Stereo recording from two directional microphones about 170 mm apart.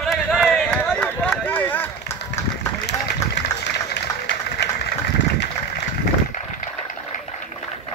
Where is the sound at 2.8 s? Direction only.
85° left.